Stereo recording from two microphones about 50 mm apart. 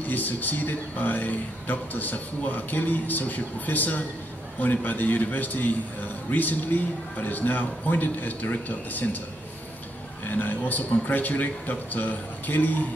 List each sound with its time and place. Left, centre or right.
0.0 s a man's voice: left
10.3 s a man's voice: left